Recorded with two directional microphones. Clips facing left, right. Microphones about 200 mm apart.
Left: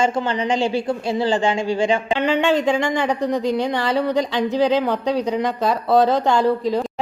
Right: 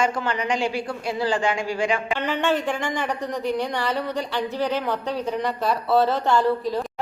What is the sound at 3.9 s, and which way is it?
Speech, 90° left.